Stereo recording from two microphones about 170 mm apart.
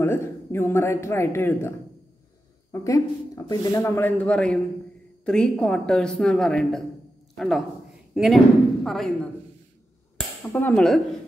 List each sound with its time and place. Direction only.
0.0 s a woman's voice: 15° left (ahead or behind)
10.5 s a woman's voice: 5° left (ahead or behind)